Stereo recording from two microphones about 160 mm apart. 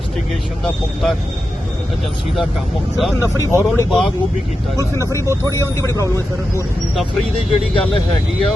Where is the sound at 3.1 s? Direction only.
20° left (ahead or behind).